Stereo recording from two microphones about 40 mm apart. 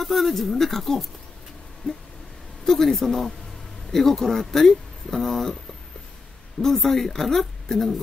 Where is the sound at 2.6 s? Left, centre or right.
Centre.